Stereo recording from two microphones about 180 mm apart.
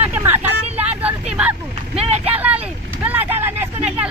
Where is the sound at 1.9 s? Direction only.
35° right (ahead or behind).